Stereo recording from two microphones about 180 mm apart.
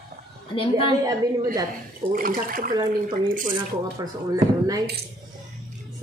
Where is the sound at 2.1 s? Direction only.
50° right (ahead or behind).